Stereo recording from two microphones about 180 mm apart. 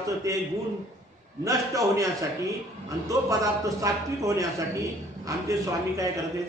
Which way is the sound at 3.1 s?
20° right (ahead or behind).